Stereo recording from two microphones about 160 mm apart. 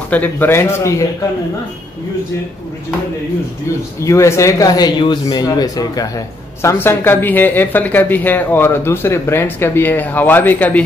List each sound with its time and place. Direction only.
0.1 s a man's voice: 10° left (ahead or behind)
4.0 s a man's voice: 20° left (ahead or behind)